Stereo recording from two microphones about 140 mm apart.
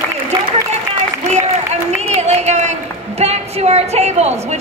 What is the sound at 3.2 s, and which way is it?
Speech, 50° right (ahead or behind).